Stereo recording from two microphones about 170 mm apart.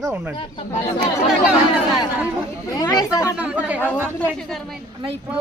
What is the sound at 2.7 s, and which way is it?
Speech, 20° left (ahead or behind).